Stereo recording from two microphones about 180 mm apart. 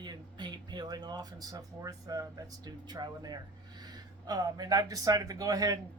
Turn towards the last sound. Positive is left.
turn(degrees=-20)  # may be behind; listen again after turning